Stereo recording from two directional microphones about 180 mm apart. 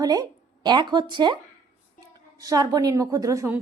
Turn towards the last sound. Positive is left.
turn(degrees=-15)  # may be behind; listen again after turning